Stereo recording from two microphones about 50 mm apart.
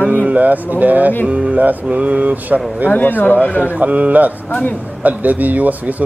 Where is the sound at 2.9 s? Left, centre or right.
Left.